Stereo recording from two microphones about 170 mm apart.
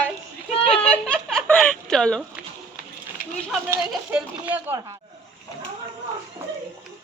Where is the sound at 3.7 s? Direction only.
10° right (ahead or behind).